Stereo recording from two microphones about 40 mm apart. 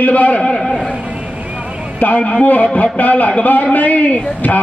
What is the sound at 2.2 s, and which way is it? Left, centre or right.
Speech, left.